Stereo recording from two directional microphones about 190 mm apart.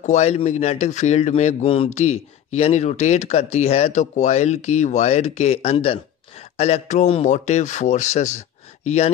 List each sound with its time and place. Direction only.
0.0 s speech: 35° left (ahead or behind)